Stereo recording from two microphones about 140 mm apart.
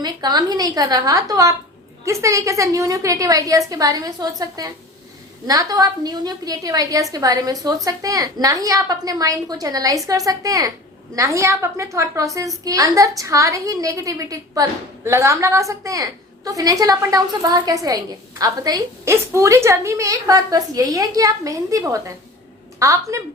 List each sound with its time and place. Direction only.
0.0 s a woman's voice: 30° right (ahead or behind)